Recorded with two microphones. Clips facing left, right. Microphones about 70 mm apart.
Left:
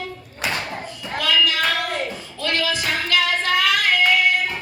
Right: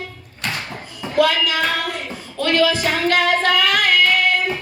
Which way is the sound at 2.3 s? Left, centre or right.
Right.